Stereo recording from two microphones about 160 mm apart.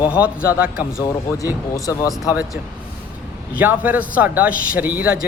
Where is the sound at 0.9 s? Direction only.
20° left (ahead or behind).